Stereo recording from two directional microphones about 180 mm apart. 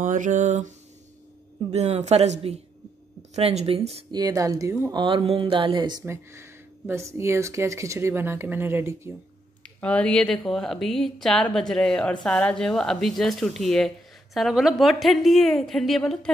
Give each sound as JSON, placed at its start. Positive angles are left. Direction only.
{"t": 0.0, "sound": "mantra", "side_deg": -45}
{"t": 1.7, "sound": "speech", "side_deg": -35}
{"t": 4.1, "sound": "speech", "side_deg": -20}
{"t": 5.0, "sound": "speech", "side_deg": -30}
{"t": 9.8, "sound": "speech", "side_deg": 5}